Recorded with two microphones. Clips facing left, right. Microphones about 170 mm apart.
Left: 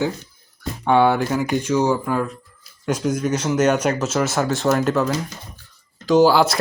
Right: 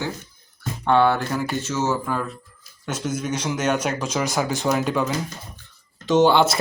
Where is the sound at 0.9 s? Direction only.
15° left (ahead or behind).